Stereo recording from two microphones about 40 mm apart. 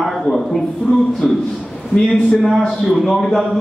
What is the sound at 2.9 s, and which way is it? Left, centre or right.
Speech, centre.